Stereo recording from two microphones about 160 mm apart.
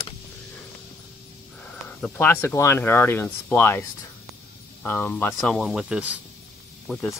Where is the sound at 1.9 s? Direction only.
10° left (ahead or behind).